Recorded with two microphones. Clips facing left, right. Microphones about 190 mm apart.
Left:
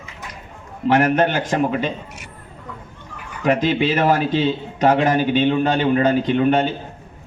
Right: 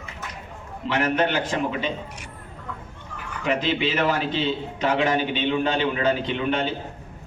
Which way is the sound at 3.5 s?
45° left (ahead or behind).